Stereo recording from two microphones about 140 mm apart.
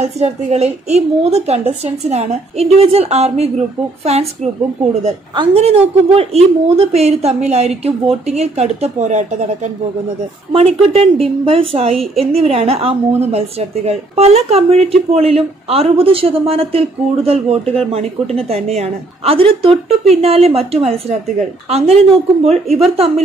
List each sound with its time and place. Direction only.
0.0 s a woman's voice: 50° right (ahead or behind)
5.3 s a woman's voice: 35° right (ahead or behind)